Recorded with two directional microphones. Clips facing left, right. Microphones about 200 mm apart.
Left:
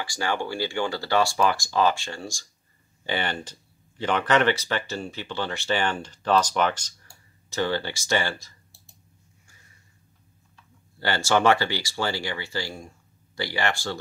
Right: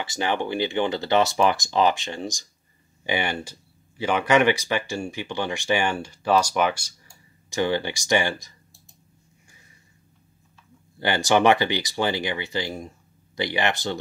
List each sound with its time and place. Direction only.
0.0 s speech: 20° right (ahead or behind)
11.0 s speech: 15° right (ahead or behind)